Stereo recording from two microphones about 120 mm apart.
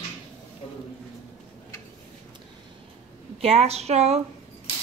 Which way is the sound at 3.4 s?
60° right (ahead or behind).